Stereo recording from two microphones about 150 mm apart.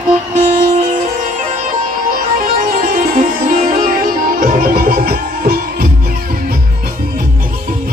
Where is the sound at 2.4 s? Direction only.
70° right (ahead or behind); by 5.9 s 90° right.